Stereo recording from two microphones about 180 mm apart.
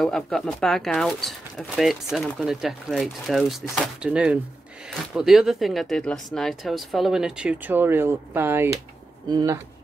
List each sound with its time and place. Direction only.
0.0 s speech: centre (ahead or behind); by 9.6 s 20° right (ahead or behind)